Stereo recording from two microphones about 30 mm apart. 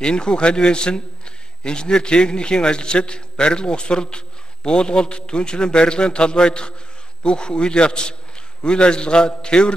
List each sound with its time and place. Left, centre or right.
0.0 s a man's voice: left